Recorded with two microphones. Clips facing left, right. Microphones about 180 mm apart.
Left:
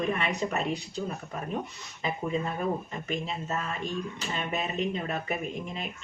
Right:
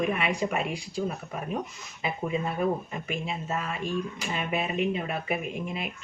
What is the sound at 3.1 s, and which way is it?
Speech, 10° right (ahead or behind).